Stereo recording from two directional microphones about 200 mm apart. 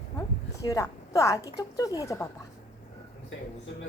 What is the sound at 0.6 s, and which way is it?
Speech, 15° left (ahead or behind).